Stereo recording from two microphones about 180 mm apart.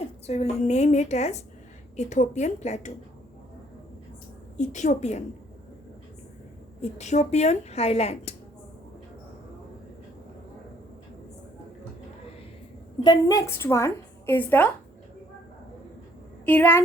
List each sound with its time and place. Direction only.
0.3 s a woman's voice: 35° left (ahead or behind)
4.5 s a woman's voice: 40° left (ahead or behind)
7.0 s a woman's voice: 40° left (ahead or behind)
13.0 s a woman's voice: 20° left (ahead or behind)
16.5 s a woman's voice: 10° left (ahead or behind)